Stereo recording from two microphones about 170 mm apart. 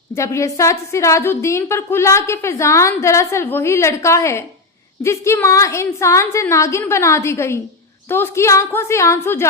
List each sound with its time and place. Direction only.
0.2 s a woman's voice: 15° left (ahead or behind)